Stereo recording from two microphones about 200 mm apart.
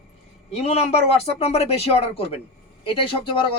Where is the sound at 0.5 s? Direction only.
30° left (ahead or behind).